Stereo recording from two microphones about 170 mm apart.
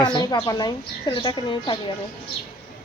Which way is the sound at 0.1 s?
25° left (ahead or behind).